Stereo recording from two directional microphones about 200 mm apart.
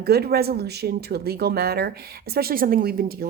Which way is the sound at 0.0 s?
50° right (ahead or behind).